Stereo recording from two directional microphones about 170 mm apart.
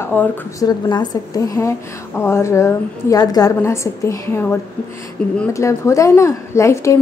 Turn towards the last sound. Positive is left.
turn(degrees=15)  # may be behind; listen again after turning